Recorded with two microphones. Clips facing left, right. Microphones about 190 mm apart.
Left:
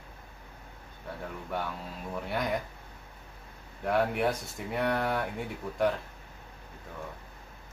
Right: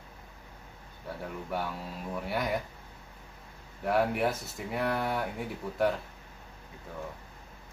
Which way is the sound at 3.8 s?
Centre (ahead or behind).